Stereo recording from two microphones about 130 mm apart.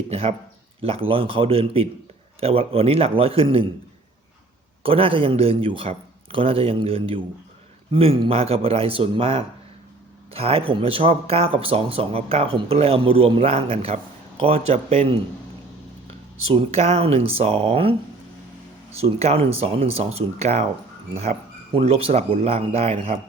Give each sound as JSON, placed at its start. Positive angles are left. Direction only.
{"t": 0.1, "sound": "speech", "side_deg": -50}
{"t": 4.8, "sound": "speech", "side_deg": -45}
{"t": 16.5, "sound": "speech", "side_deg": -50}
{"t": 18.9, "sound": "speech", "side_deg": -50}
{"t": 21.8, "sound": "speech", "side_deg": -50}